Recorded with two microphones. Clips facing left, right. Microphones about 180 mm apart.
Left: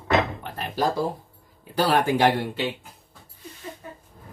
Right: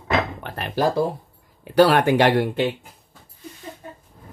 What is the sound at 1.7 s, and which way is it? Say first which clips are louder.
Speech: right 6 dB; 70° right (ahead or behind).